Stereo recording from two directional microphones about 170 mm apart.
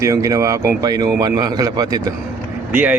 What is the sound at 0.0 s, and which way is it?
Speech, 20° right (ahead or behind).